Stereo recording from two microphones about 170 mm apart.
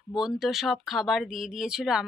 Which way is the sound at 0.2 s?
Centre (ahead or behind).